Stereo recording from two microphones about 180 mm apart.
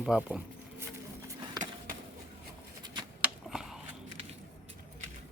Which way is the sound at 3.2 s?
Centre (ahead or behind).